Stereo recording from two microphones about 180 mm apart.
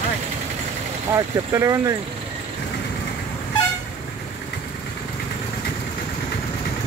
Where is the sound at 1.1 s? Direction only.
15° right (ahead or behind).